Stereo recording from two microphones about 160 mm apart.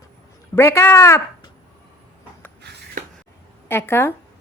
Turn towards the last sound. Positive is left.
turn(degrees=15)  # may be behind; listen again after turning